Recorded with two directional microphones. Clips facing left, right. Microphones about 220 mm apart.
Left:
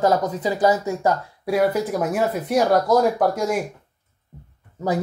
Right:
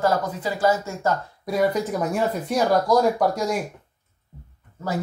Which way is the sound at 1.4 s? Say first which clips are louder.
Left 2 dB; 5° left (ahead or behind).